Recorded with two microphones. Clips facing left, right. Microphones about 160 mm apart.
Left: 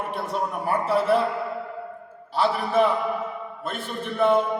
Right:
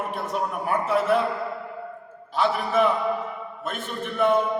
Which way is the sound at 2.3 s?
30° left (ahead or behind).